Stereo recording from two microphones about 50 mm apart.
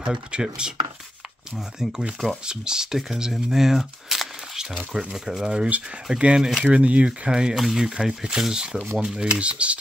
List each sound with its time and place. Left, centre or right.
0.0 s speech: centre
1.8 s speech: centre